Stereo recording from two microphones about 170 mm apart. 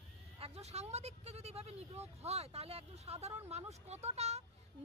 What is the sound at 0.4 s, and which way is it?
Speech, 40° right (ahead or behind).